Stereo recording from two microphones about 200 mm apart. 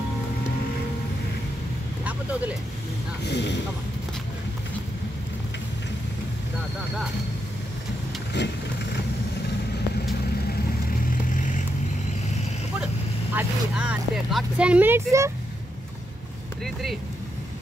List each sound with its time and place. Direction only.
3.3 s speech: 60° left (ahead or behind)
8.4 s speech: 60° left (ahead or behind)
11.3 s vehicle: 40° left (ahead or behind)
13.3 s speech: 5° right (ahead or behind)
16.6 s speech: centre (ahead or behind)